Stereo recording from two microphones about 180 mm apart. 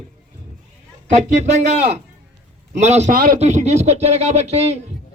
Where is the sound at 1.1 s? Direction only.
40° right (ahead or behind).